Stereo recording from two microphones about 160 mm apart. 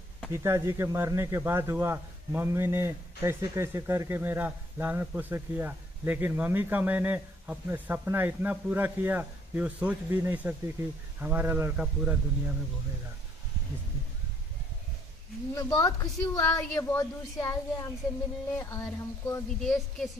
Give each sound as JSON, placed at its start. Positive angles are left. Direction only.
{"t": 0.3, "sound": "speech", "side_deg": -15}
{"t": 15.5, "sound": "a woman's voice", "side_deg": 20}
{"t": 19.6, "sound": "a woman's voice", "side_deg": 0}